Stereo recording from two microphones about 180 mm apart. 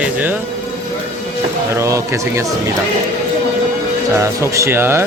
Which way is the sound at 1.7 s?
15° right (ahead or behind).